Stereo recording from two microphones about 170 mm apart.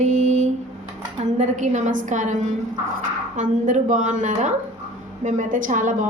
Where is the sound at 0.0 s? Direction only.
45° right (ahead or behind).